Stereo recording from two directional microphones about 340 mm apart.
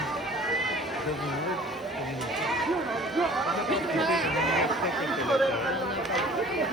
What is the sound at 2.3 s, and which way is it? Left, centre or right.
Run, centre.